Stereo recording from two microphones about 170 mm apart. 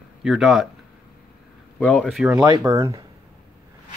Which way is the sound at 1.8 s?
5° left (ahead or behind).